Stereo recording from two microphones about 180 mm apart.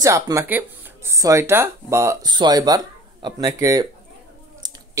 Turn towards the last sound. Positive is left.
turn(degrees=-20)  # may be behind; listen again after turning